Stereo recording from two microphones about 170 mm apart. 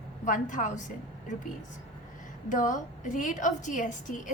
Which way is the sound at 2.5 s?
50° left (ahead or behind).